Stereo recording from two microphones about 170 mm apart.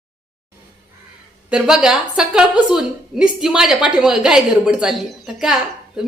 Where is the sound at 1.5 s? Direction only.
5° right (ahead or behind).